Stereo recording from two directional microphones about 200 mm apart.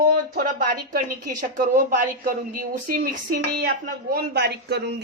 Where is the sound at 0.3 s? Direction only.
45° right (ahead or behind).